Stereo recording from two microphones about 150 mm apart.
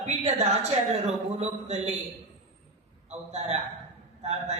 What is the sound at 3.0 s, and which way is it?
Speech, 45° right (ahead or behind).